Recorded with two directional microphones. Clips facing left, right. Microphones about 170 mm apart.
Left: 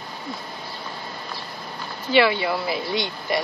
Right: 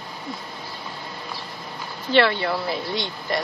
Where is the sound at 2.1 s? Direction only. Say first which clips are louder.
Even; 5° left (ahead or behind).